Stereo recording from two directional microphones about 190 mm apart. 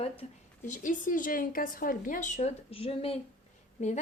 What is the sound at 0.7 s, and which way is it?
Speech, 45° left (ahead or behind).